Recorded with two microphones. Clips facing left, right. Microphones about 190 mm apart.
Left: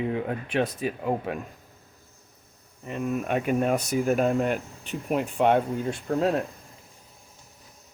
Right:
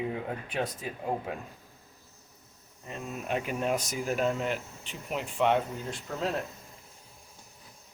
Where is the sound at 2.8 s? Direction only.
65° left (ahead or behind).